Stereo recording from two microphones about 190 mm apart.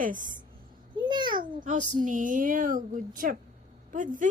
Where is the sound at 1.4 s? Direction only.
40° right (ahead or behind).